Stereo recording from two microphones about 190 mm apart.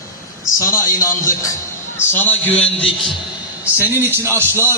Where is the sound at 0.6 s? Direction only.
15° left (ahead or behind).